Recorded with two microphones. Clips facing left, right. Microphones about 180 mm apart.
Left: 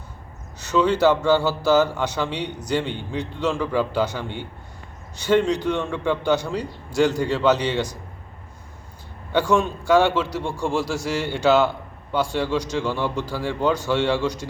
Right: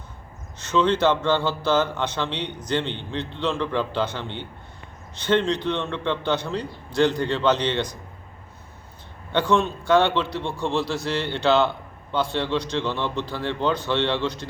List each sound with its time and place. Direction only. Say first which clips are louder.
0.7 s a man's voice: left 2 dB; 10° left (ahead or behind)
9.3 s a man's voice: left 1 dB; 10° left (ahead or behind)